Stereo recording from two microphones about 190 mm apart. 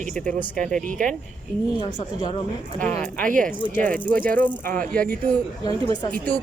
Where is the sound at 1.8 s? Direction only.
25° left (ahead or behind).